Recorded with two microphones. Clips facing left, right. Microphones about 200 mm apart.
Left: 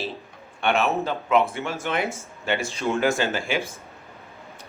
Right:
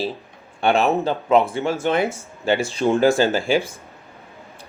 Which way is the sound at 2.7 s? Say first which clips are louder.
Right 7 dB; 30° right (ahead or behind).